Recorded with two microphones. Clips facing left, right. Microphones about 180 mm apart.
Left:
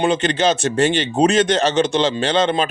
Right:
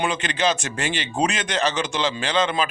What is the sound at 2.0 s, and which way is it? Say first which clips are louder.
Speech: left 5 dB; 30° left (ahead or behind).